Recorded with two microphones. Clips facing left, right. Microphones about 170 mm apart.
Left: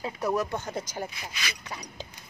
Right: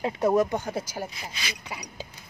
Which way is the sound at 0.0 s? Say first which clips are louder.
Right 6 dB; 25° right (ahead or behind).